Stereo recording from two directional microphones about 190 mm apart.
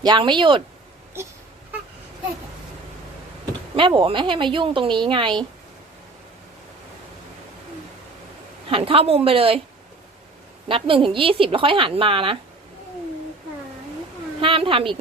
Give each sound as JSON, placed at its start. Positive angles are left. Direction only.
{"t": 0.0, "sound": "a woman's voice", "side_deg": -25}
{"t": 3.8, "sound": "a woman's voice", "side_deg": -25}
{"t": 8.7, "sound": "a woman's voice", "side_deg": -30}
{"t": 10.7, "sound": "a woman's voice", "side_deg": -30}
{"t": 14.4, "sound": "a woman's voice", "side_deg": -30}